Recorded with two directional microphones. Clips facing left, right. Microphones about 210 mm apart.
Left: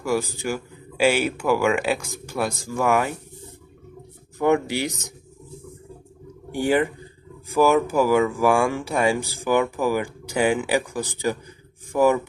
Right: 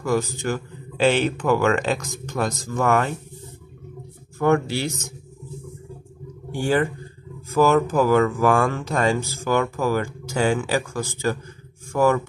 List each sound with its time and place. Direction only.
0.0 s speech: 10° left (ahead or behind)
4.4 s speech: 15° left (ahead or behind)
6.5 s speech: 15° left (ahead or behind)